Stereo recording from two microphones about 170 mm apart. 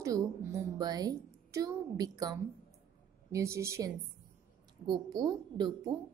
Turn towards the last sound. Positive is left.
turn(degrees=-25)  # may be behind; listen again after turning